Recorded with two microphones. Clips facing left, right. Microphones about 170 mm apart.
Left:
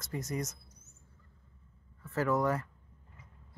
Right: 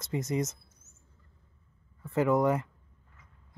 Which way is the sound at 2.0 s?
15° right (ahead or behind).